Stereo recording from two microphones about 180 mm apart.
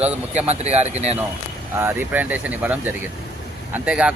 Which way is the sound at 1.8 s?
10° right (ahead or behind).